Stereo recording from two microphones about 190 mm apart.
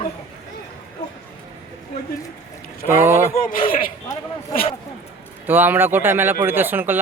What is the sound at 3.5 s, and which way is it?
Speech, 30° left (ahead or behind).